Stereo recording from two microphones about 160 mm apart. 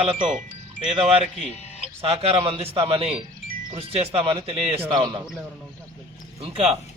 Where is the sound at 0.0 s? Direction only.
35° right (ahead or behind).